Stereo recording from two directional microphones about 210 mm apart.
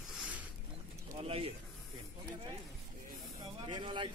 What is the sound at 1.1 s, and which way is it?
Bird, 25° right (ahead or behind).